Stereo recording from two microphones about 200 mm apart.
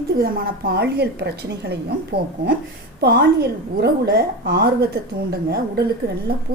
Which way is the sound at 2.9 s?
50° right (ahead or behind).